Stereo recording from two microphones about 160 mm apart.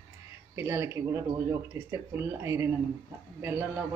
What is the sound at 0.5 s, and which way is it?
Speech, 15° right (ahead or behind).